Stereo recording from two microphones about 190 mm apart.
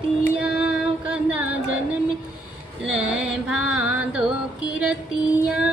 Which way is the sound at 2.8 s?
5° right (ahead or behind).